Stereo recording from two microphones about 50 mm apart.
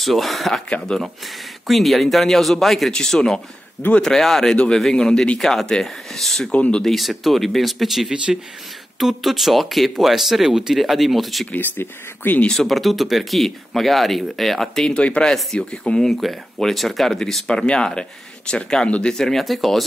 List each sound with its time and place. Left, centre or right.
0.0 s speech: centre
0.7 s speech: centre
1.7 s speech: centre
6.5 s speech: left
6.8 s speech: centre
11.5 s speech: left
12.5 s speech: centre
17.5 s speech: centre